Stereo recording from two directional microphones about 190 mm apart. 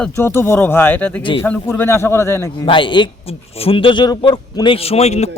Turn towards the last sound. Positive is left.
turn(degrees=35)  # may be behind; listen again after turning